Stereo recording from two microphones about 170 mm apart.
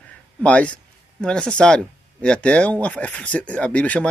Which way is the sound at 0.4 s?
5° left (ahead or behind).